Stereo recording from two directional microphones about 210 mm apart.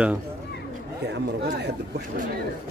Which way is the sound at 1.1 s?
50° right (ahead or behind).